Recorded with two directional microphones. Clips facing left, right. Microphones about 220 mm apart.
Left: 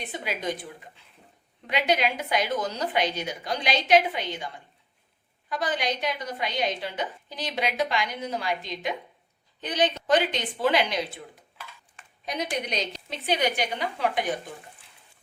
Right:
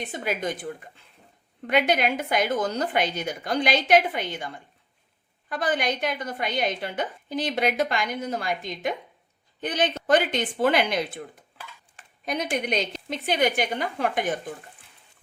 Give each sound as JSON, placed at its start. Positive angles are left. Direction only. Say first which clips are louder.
{"t": 0.1, "sound": "a woman's voice", "louder": "right 1 dB", "side_deg": -50}
{"t": 12.2, "sound": "a woman's voice", "louder": "right 3 dB", "side_deg": -50}